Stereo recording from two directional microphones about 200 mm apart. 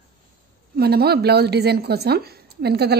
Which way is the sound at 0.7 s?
50° right (ahead or behind).